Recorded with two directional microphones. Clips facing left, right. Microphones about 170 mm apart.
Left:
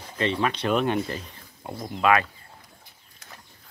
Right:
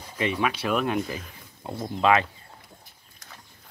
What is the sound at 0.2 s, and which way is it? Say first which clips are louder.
Speech: left 1 dB; 10° right (ahead or behind).